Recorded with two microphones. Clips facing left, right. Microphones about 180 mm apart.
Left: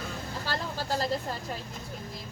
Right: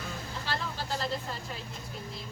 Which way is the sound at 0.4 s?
40° left (ahead or behind).